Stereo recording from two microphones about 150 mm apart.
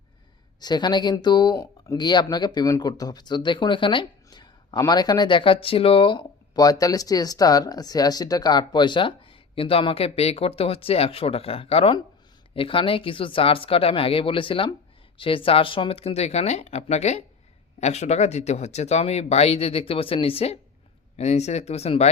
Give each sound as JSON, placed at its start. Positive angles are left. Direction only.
{"t": 0.6, "sound": "speech", "side_deg": 30}